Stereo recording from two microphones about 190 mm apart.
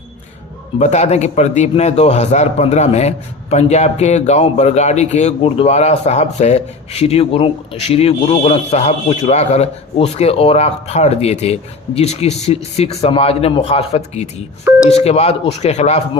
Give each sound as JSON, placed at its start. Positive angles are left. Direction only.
{"t": 0.8, "sound": "a man's voice", "side_deg": 35}